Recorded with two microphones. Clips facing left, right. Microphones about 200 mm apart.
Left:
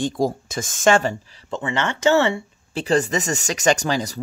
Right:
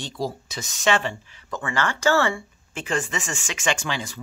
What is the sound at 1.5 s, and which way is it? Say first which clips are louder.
Speech: left 2 dB; 20° left (ahead or behind).